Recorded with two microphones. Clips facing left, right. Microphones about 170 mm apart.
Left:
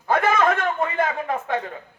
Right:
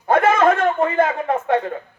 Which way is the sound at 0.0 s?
30° right (ahead or behind).